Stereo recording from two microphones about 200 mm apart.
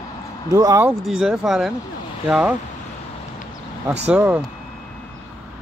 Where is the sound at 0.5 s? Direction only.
15° right (ahead or behind).